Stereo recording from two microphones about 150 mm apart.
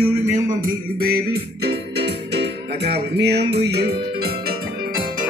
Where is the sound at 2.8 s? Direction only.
90° right.